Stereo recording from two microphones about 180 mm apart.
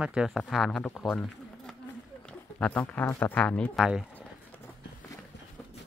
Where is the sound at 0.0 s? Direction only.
5° right (ahead or behind).